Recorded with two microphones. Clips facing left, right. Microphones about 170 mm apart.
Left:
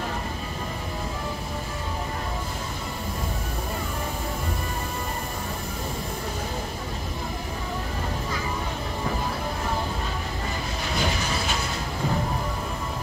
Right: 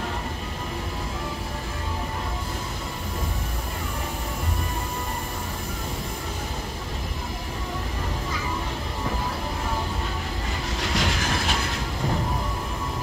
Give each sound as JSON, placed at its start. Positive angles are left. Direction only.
{"t": 10.8, "sound": "train", "side_deg": -90}